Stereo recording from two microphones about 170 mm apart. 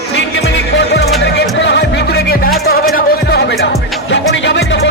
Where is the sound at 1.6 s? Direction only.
90° left; by 2.5 s 70° left (ahead or behind).